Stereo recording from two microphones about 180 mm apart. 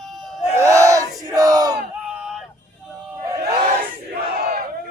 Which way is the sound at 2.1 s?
5° right (ahead or behind).